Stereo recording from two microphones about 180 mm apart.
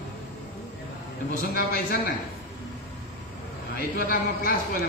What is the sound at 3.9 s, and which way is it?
Speech, 55° left (ahead or behind).